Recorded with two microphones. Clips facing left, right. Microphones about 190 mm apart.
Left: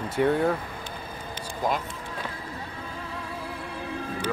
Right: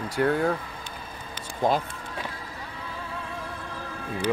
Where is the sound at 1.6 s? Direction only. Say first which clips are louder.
Right 4 dB; 25° right (ahead or behind).